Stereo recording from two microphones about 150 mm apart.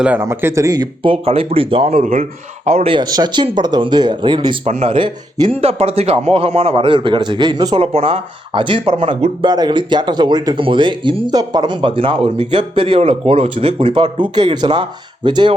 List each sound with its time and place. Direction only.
0.0 s a man's voice: 15° right (ahead or behind)
1.0 s speech: 35° right (ahead or behind)
4.6 s speech: 45° right (ahead or behind); by 7.8 s 30° right (ahead or behind)
7.8 s speech: 40° right (ahead or behind)